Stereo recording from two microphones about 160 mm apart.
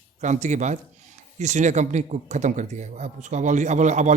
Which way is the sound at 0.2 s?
50° right (ahead or behind).